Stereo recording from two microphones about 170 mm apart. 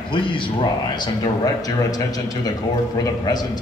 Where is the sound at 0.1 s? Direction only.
30° left (ahead or behind).